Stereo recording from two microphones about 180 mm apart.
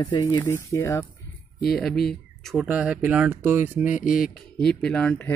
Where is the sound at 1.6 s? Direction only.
Centre (ahead or behind).